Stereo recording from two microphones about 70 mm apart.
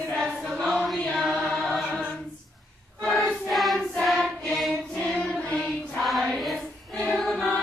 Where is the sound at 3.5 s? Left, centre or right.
Centre.